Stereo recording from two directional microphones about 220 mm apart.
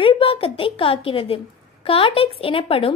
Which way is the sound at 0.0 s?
25° left (ahead or behind).